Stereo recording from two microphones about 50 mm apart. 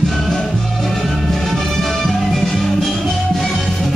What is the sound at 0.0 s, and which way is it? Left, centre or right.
Music, centre.